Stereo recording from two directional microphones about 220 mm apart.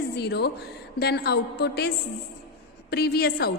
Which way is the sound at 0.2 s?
50° left (ahead or behind).